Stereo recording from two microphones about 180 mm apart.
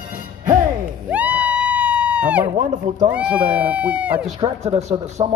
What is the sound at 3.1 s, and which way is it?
Speech, 5° right (ahead or behind).